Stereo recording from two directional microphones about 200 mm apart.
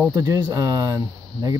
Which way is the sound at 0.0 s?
15° right (ahead or behind).